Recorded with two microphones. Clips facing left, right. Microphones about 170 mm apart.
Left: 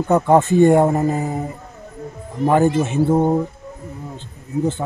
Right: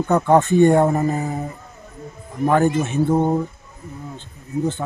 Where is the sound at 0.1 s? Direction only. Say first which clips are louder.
Left 1 dB; 5° left (ahead or behind).